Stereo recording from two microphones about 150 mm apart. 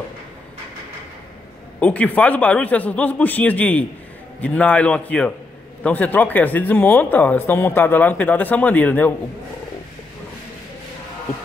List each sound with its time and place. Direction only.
1.8 s speech: 10° left (ahead or behind)